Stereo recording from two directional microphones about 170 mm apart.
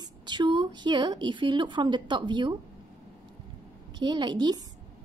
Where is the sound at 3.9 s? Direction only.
25° right (ahead or behind).